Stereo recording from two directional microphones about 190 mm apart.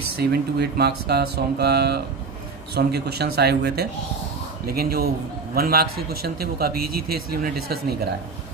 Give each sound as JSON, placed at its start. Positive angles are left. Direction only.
{"t": 0.2, "sound": "a man's voice", "side_deg": -55}